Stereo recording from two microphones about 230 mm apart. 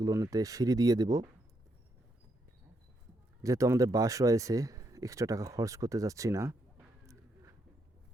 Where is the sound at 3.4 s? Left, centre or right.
Centre.